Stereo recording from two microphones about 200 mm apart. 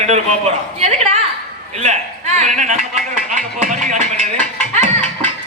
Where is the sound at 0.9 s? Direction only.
35° right (ahead or behind).